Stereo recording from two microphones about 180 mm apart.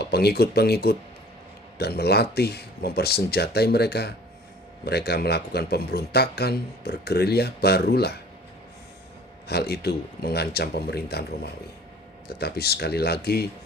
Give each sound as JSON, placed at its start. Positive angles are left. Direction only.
{"t": 0.0, "sound": "a man's voice", "side_deg": 60}
{"t": 9.5, "sound": "a man's voice", "side_deg": 60}